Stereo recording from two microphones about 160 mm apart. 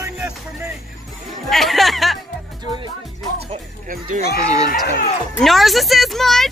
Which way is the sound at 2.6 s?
30° right (ahead or behind).